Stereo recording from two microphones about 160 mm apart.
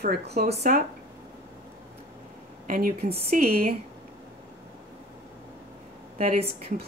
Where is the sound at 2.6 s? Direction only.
60° right (ahead or behind).